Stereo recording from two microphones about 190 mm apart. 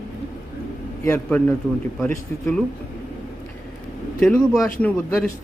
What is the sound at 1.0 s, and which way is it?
Speech, 10° left (ahead or behind).